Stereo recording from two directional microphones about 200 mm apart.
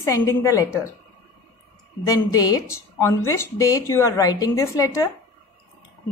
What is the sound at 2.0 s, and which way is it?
A woman's voice, 20° left (ahead or behind).